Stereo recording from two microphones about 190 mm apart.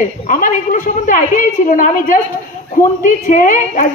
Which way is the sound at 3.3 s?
45° left (ahead or behind).